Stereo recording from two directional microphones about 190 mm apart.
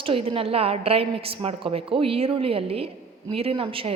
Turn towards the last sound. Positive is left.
turn(degrees=-30)  # may be behind; listen again after turning